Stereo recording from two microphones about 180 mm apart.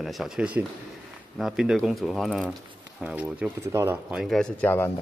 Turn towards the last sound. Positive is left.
turn(degrees=10)  # may be behind; listen again after turning